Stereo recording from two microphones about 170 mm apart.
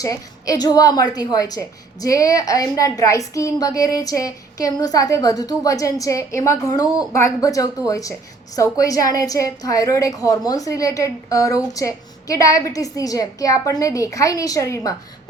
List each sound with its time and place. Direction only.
0.0 s a woman's voice: 20° left (ahead or behind)